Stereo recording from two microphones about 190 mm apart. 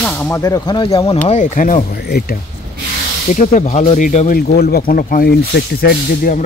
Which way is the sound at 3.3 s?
40° left (ahead or behind).